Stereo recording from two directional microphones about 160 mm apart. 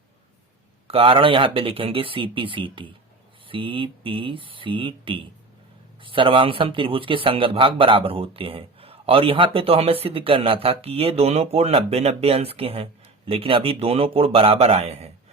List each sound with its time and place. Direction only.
0.9 s speech: 35° right (ahead or behind)